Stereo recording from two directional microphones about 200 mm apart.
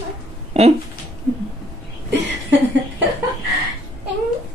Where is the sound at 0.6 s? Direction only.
30° right (ahead or behind).